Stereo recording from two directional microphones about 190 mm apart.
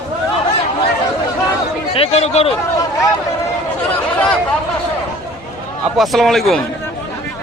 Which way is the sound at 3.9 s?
5° left (ahead or behind).